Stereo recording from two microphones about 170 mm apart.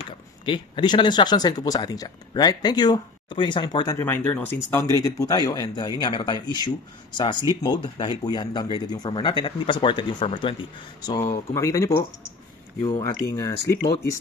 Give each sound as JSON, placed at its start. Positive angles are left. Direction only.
{"t": 0.5, "sound": "speech", "side_deg": 30}
{"t": 13.1, "sound": "speech", "side_deg": 20}